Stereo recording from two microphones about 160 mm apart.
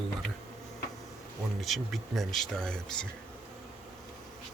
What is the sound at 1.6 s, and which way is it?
Speech, centre (ahead or behind).